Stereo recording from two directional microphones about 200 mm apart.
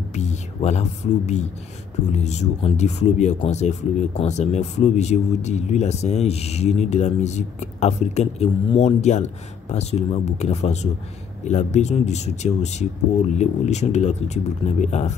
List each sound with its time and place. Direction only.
0.1 s speech: 35° left (ahead or behind)